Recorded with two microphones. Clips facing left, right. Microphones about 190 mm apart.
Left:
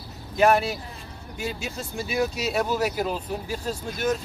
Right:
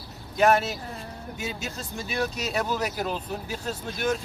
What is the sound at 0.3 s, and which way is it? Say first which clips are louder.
Speech: left 1 dB; centre (ahead or behind).